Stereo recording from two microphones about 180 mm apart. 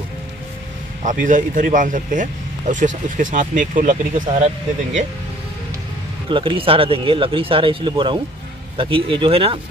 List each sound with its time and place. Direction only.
1.0 s speech: 45° right (ahead or behind)
6.3 s speech: 30° right (ahead or behind)